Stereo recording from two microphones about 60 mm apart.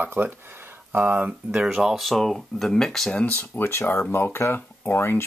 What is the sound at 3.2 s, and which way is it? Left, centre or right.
Speech, left.